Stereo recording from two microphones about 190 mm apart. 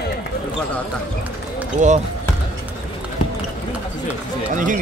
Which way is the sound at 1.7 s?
40° right (ahead or behind).